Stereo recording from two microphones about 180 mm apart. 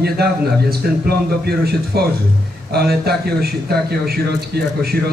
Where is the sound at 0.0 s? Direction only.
60° right (ahead or behind).